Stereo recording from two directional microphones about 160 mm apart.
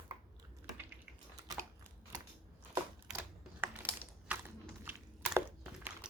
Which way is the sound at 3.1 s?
5° right (ahead or behind).